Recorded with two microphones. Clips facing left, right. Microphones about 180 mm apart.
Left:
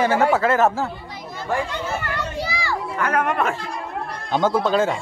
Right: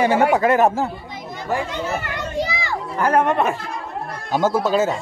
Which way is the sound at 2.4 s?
20° right (ahead or behind).